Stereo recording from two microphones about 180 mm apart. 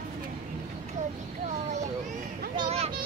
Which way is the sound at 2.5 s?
30° right (ahead or behind).